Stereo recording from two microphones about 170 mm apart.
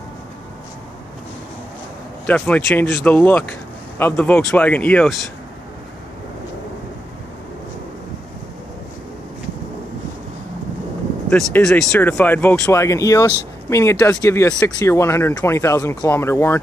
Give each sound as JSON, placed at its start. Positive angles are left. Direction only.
{"t": 2.2, "sound": "speech", "side_deg": 10}
{"t": 11.2, "sound": "speech", "side_deg": 5}